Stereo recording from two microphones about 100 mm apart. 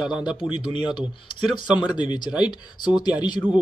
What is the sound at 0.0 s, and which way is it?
Speech, 45° left (ahead or behind).